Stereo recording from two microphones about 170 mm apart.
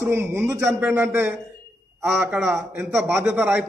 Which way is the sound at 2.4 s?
15° right (ahead or behind).